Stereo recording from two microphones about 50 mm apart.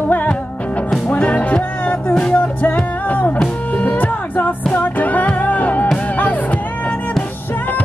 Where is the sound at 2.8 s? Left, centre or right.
Left.